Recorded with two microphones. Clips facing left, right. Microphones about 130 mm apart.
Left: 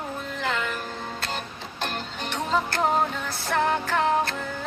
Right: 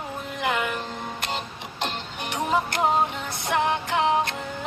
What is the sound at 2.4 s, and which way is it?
Music, 15° right (ahead or behind).